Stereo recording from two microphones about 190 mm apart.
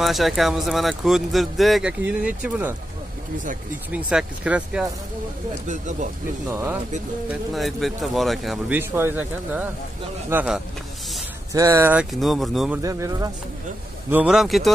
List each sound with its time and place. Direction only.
0.0 s speech: centre (ahead or behind)
3.9 s speech: 5° right (ahead or behind)
5.5 s speech: 40° right (ahead or behind)
6.5 s speech: 10° right (ahead or behind)
7.2 s speech: centre (ahead or behind)
11.5 s speech: 15° right (ahead or behind)
12.8 s speech: 20° right (ahead or behind)
14.1 s speech: 5° right (ahead or behind)